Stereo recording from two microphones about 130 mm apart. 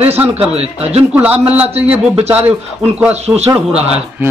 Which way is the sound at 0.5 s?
50° right (ahead or behind).